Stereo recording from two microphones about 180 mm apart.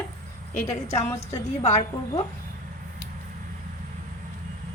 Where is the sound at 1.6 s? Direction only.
35° left (ahead or behind).